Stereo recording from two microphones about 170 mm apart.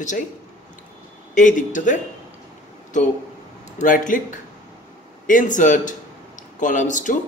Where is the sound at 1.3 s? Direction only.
50° left (ahead or behind).